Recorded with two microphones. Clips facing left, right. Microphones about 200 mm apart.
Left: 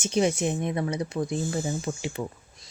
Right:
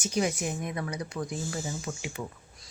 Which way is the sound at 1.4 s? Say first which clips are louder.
Left 6 dB; 55° left (ahead or behind).